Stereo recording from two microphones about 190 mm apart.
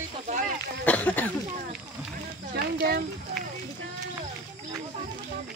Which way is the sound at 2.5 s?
55° right (ahead or behind).